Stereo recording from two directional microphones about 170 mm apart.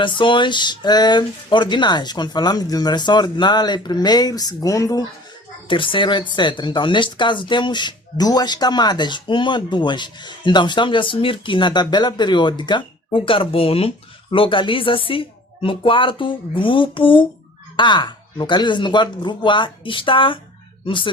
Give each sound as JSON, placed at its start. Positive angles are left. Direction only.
{"t": 0.0, "sound": "speech", "side_deg": 30}
{"t": 5.6, "sound": "speech", "side_deg": 30}